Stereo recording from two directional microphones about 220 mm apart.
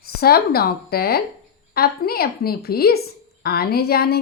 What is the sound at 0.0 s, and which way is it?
A woman's voice, 45° left (ahead or behind).